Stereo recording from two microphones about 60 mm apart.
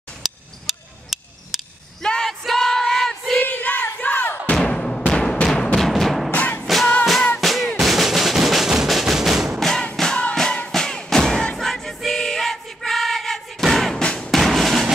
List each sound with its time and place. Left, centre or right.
0.2 s a sound: centre
2.0 s a sound: centre
3.3 s a sound: left
4.6 s music: centre
6.3 s music: left
7.3 s music: centre
9.6 s music: centre
14.0 s music: centre
14.3 s drum: centre